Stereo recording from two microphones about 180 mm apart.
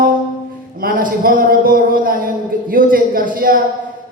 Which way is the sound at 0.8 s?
50° right (ahead or behind).